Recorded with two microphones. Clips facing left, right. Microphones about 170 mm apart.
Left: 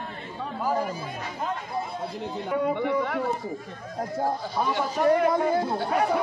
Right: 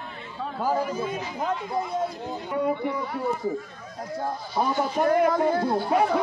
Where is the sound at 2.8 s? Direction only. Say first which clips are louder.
Left 3 dB; 85° left.